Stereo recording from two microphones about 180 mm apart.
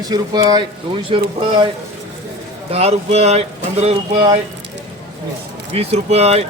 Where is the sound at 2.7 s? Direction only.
35° right (ahead or behind).